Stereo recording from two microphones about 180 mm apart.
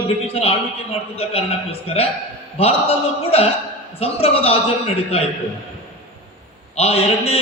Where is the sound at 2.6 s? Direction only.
35° left (ahead or behind).